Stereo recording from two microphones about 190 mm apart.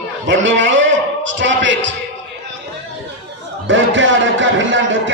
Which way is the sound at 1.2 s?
75° right (ahead or behind).